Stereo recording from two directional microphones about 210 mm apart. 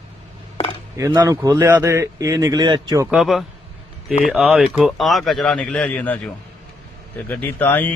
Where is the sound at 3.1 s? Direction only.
Centre (ahead or behind).